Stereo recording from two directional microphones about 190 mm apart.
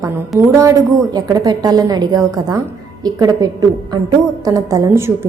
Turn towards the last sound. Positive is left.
turn(degrees=-15)  # may be behind; listen again after turning